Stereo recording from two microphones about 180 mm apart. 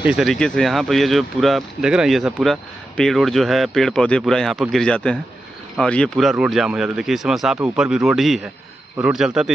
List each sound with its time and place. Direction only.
0.0 s speech: centre (ahead or behind)